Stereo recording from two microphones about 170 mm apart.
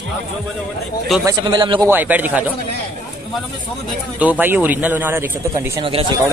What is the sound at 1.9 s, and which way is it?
Speech, 10° right (ahead or behind).